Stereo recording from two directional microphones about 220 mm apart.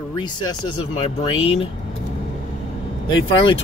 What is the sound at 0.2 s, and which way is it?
Speech, 20° left (ahead or behind).